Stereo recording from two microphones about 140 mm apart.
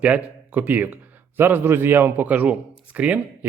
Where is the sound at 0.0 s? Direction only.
10° right (ahead or behind).